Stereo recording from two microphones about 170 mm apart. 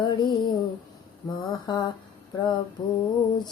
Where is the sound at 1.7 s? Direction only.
25° left (ahead or behind).